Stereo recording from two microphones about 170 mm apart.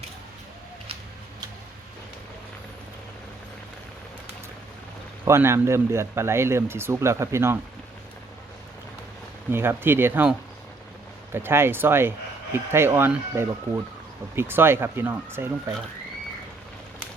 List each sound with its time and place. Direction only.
5.2 s speech: 15° right (ahead or behind)
9.5 s speech: 15° right (ahead or behind)